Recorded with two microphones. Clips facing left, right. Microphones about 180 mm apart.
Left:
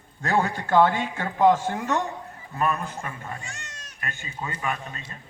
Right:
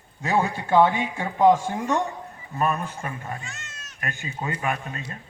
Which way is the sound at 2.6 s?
30° right (ahead or behind).